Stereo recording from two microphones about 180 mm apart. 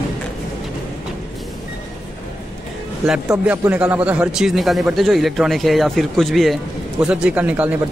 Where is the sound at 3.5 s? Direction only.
10° right (ahead or behind).